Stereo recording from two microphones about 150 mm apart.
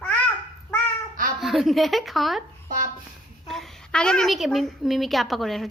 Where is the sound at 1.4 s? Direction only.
Centre (ahead or behind).